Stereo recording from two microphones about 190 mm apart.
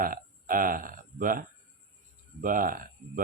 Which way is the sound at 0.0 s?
45° right (ahead or behind).